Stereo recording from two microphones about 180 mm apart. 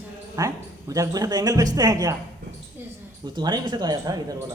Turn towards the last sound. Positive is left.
turn(degrees=-20)  # may be behind; listen again after turning